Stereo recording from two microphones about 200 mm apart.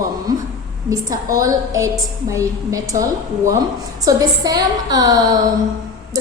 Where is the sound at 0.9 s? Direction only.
15° right (ahead or behind).